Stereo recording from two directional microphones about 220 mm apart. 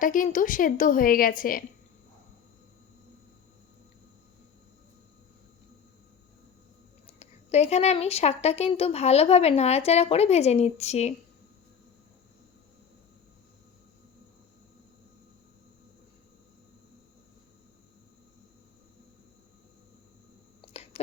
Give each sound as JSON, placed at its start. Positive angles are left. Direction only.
{"t": 0.0, "sound": "a woman's voice", "side_deg": 35}
{"t": 7.2, "sound": "speech", "side_deg": 30}